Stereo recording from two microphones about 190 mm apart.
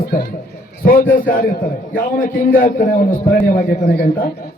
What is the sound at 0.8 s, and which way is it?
A man's voice, 45° left (ahead or behind).